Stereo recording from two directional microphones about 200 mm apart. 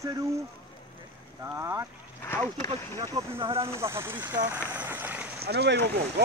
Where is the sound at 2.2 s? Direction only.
15° left (ahead or behind).